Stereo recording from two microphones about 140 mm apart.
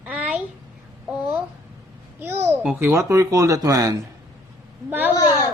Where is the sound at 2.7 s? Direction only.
15° right (ahead or behind).